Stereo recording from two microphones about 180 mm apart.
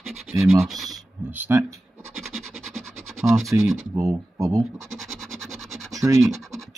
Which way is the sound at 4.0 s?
20° right (ahead or behind).